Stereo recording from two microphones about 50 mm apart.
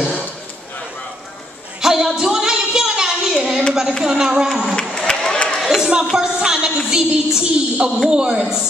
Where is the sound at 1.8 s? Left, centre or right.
Centre.